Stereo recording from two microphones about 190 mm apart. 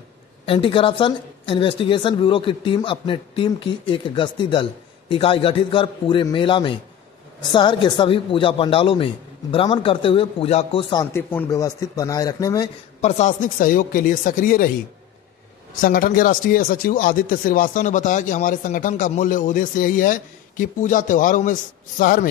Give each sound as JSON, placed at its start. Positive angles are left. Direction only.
{"t": 0.5, "sound": "a woman's voice", "side_deg": 25}
{"t": 11.1, "sound": "a man's voice", "side_deg": 10}
{"t": 13.0, "sound": "speech", "side_deg": 40}
{"t": 15.7, "sound": "speech", "side_deg": 45}